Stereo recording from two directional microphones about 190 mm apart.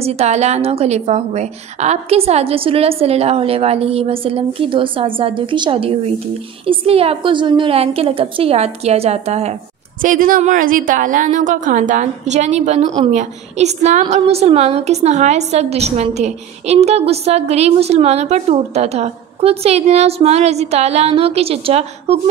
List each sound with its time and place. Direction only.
0.0 s a woman's voice: 35° right (ahead or behind)
10.0 s a woman's voice: 45° right (ahead or behind)